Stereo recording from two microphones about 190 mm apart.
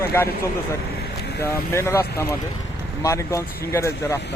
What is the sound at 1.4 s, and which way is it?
Speech, 15° left (ahead or behind).